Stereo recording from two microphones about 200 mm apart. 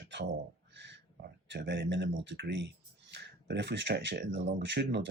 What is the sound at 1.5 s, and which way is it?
Speech, 60° right (ahead or behind).